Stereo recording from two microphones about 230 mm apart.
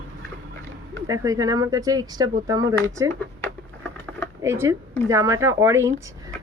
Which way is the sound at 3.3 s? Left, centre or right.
Centre.